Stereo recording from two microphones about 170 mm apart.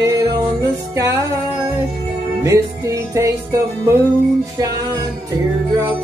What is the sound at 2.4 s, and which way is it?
Music, 20° right (ahead or behind).